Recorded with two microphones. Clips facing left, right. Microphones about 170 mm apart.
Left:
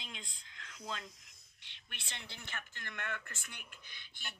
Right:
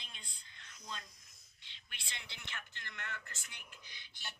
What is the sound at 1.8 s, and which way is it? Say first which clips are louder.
A woman's voice: left 2 dB; 55° left (ahead or behind).